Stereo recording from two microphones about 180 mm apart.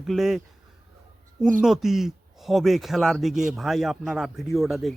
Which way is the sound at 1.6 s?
Centre (ahead or behind).